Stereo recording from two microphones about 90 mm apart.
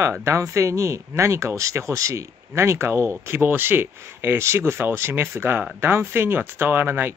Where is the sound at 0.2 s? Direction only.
30° right (ahead or behind).